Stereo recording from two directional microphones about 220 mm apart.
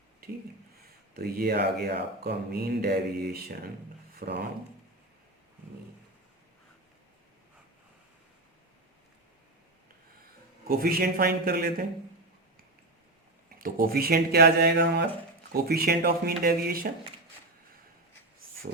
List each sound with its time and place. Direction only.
1.1 s speech: 45° right (ahead or behind)
10.7 s speech: 40° right (ahead or behind)
13.6 s speech: 40° right (ahead or behind)